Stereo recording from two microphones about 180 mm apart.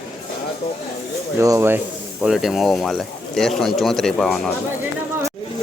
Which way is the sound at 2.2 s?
Centre (ahead or behind).